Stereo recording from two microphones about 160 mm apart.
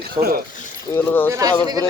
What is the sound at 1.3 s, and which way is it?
Speech, 20° right (ahead or behind).